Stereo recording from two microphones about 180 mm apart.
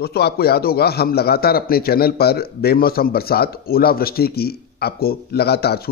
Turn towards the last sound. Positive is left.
turn(degrees=60)  # may be behind; listen again after turning